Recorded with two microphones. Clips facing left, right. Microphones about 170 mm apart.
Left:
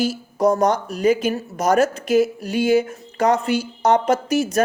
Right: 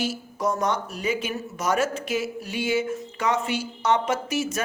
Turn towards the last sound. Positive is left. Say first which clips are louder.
# left 7 dB
turn(degrees=40)  # may be behind; listen again after turning